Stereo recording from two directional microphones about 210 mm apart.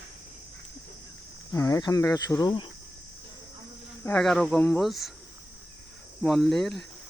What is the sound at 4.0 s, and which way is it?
Speech, 5° left (ahead or behind).